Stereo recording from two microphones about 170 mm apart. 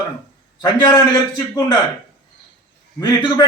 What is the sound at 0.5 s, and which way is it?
Speech, 25° left (ahead or behind).